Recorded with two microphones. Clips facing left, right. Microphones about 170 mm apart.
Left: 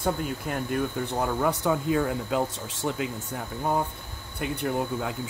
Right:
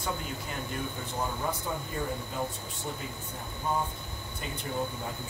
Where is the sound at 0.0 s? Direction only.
60° left (ahead or behind).